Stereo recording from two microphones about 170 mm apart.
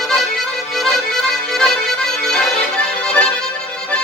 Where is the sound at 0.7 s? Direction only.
Centre (ahead or behind).